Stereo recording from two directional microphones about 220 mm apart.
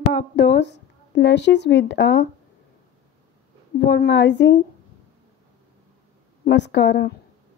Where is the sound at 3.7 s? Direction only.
50° left (ahead or behind).